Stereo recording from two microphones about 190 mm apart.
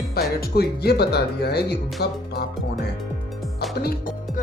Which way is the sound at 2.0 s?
55° left (ahead or behind).